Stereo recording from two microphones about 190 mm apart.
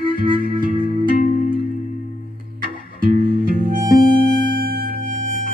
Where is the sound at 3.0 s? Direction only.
50° right (ahead or behind).